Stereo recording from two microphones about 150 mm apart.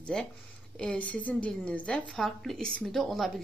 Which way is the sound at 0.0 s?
5° left (ahead or behind).